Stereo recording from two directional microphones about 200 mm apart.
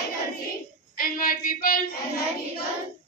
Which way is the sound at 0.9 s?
45° left (ahead or behind).